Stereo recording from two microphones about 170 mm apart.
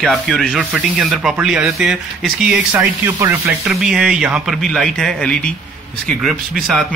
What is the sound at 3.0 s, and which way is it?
Speech, 15° right (ahead or behind).